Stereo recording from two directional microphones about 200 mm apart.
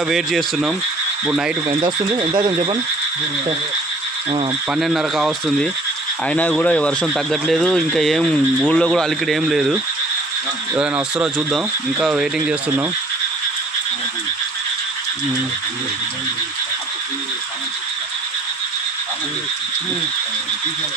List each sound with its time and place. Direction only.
0.1 s speech: centre (ahead or behind)
1.7 s speech: 20° right (ahead or behind)
4.7 s speech: centre (ahead or behind)
10.8 s speech: centre (ahead or behind)